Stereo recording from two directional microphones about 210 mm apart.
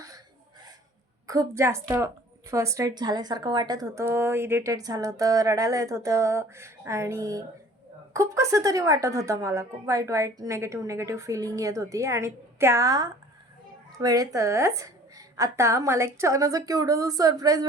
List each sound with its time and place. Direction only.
1.3 s a woman's voice: 15° right (ahead or behind)